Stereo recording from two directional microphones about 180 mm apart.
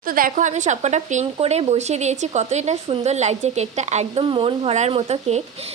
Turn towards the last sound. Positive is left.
turn(degrees=-35)  # may be behind; listen again after turning